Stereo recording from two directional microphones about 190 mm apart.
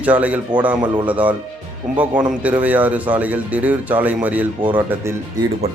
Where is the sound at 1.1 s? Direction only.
10° right (ahead or behind).